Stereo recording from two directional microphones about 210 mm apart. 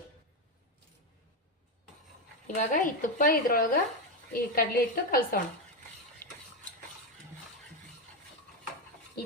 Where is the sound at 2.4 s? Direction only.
40° left (ahead or behind).